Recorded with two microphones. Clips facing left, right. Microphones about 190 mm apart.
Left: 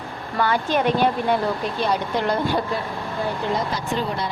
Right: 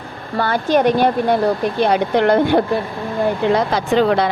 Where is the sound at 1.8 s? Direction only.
65° right (ahead or behind).